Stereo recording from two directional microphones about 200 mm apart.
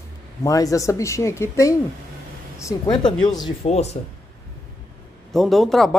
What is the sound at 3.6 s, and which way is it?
Speech, 35° left (ahead or behind).